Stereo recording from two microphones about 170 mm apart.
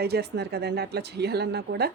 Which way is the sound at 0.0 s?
75° right (ahead or behind).